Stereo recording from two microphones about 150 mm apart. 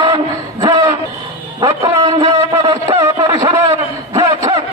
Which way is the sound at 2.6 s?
35° right (ahead or behind).